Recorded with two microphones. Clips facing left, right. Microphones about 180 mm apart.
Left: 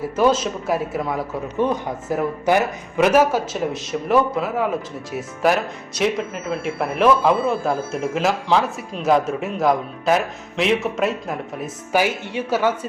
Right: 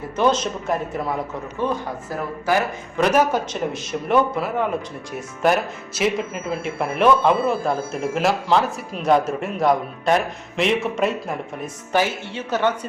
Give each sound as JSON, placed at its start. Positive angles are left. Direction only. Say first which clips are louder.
{"t": 0.2, "sound": "a man's voice", "louder": "left 1 dB", "side_deg": 5}
{"t": 1.6, "sound": "speech", "louder": "left 2 dB", "side_deg": 20}
{"t": 3.0, "sound": "speech", "louder": "left 2 dB", "side_deg": 5}